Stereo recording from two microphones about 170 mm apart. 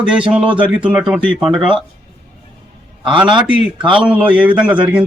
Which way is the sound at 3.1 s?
30° right (ahead or behind).